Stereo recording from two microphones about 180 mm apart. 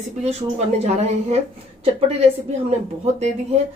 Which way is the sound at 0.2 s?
40° right (ahead or behind).